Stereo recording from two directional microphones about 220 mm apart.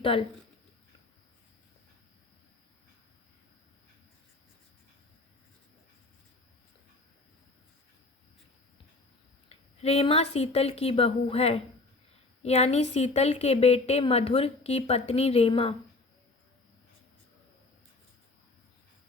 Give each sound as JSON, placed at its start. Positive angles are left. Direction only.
{"t": 0.0, "sound": "speech", "side_deg": 25}
{"t": 9.5, "sound": "speech", "side_deg": 30}